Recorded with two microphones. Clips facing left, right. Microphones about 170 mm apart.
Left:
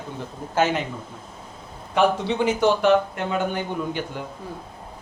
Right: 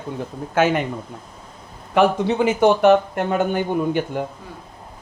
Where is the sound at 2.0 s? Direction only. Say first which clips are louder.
Right 3 dB; 50° right (ahead or behind).